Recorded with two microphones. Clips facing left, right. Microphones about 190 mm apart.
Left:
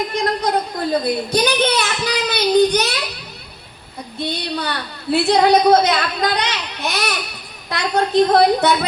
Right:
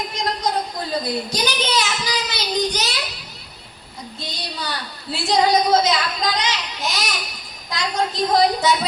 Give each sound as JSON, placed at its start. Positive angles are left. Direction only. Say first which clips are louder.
{"t": 0.1, "sound": "a sound", "louder": "left 4 dB", "side_deg": 55}
{"t": 1.0, "sound": "speech", "louder": "left 6 dB", "side_deg": 60}
{"t": 4.2, "sound": "a woman's voice", "louder": "left 9 dB", "side_deg": 60}